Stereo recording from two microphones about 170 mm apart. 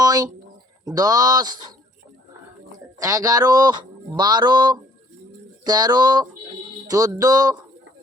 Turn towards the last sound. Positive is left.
turn(degrees=-20)  # may be behind; listen again after turning